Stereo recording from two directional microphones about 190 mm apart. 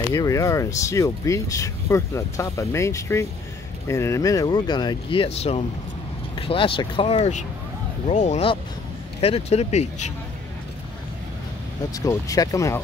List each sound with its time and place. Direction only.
0.1 s speech: 20° left (ahead or behind); by 10.1 s 35° left (ahead or behind)
11.9 s speech: 15° left (ahead or behind)